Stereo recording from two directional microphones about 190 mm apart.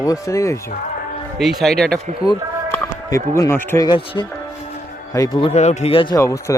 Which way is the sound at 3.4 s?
10° left (ahead or behind).